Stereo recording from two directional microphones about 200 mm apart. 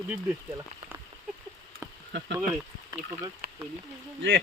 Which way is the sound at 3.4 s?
50° right (ahead or behind).